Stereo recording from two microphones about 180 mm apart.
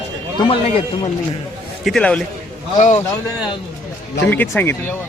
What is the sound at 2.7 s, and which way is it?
Speech, 40° left (ahead or behind).